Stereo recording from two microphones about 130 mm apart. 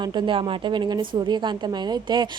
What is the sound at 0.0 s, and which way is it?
A woman's voice, 35° right (ahead or behind).